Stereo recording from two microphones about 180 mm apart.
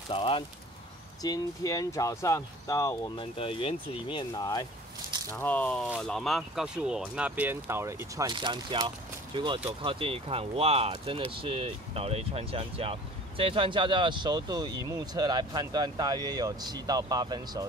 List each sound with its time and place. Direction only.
0.1 s speech: 30° left (ahead or behind)
3.3 s speech: 30° left (ahead or behind)
5.3 s speech: 10° left (ahead or behind); by 17.6 s 20° right (ahead or behind)